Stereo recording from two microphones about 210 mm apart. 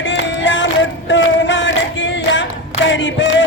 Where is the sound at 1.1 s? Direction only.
60° left (ahead or behind).